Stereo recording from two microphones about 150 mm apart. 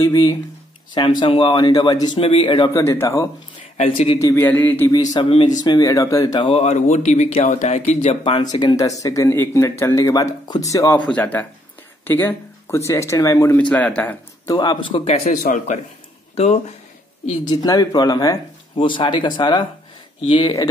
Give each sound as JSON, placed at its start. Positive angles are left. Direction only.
{"t": 0.0, "sound": "speech", "side_deg": 25}
{"t": 1.2, "sound": "a man's voice", "side_deg": 35}
{"t": 2.7, "sound": "speech", "side_deg": 20}
{"t": 3.7, "sound": "speech", "side_deg": 45}
{"t": 4.2, "sound": "speech", "side_deg": 20}
{"t": 4.5, "sound": "speech", "side_deg": 10}
{"t": 5.1, "sound": "a man's voice", "side_deg": 35}
{"t": 6.6, "sound": "speech", "side_deg": 50}
{"t": 8.2, "sound": "speech", "side_deg": 30}
{"t": 11.0, "sound": "speech", "side_deg": 10}
{"t": 13.6, "sound": "speech", "side_deg": 10}
{"t": 14.5, "sound": "a man's voice", "side_deg": 30}
{"t": 15.4, "sound": "speech", "side_deg": 55}
{"t": 17.5, "sound": "a man's voice", "side_deg": 25}